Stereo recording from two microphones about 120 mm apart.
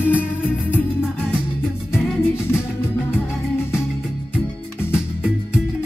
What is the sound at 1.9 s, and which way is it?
Music, 20° left (ahead or behind).